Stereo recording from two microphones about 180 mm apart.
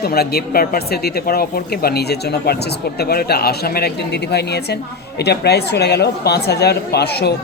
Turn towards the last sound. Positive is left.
turn(degrees=65)  # may be behind; listen again after turning